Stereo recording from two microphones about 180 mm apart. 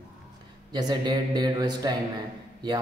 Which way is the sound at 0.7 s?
25° right (ahead or behind).